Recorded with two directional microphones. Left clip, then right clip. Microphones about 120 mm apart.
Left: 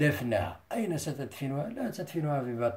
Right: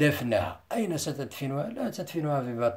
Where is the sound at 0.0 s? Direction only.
45° right (ahead or behind).